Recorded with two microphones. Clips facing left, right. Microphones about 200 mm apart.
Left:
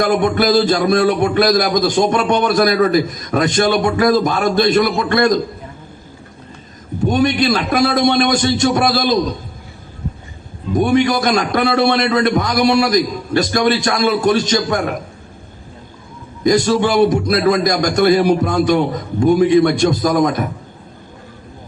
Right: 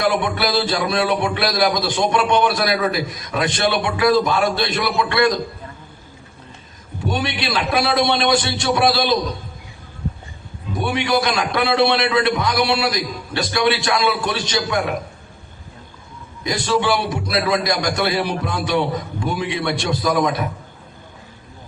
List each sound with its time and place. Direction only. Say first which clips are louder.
0.0 s a man's voice: left 5 dB; 45° left (ahead or behind)
7.1 s a man's voice: left 8 dB; 45° left (ahead or behind)
10.8 s a man's voice: left 6 dB; 45° left (ahead or behind)
16.4 s a man's voice: left 7 dB; 45° left (ahead or behind)